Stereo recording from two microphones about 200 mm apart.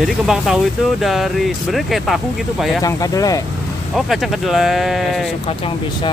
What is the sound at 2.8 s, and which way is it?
Speech, 20° left (ahead or behind).